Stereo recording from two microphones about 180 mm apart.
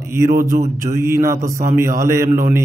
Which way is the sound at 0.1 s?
15° right (ahead or behind).